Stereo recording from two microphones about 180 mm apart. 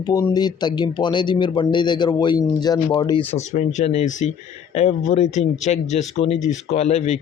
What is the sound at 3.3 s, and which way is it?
Speech, 40° left (ahead or behind).